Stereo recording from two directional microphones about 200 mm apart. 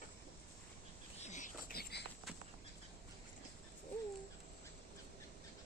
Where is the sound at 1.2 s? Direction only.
35° left (ahead or behind); by 2.0 s 55° left (ahead or behind).